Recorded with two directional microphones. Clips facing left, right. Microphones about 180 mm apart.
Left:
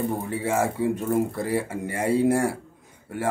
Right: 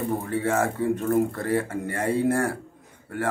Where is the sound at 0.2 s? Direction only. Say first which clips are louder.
Even; 15° left (ahead or behind).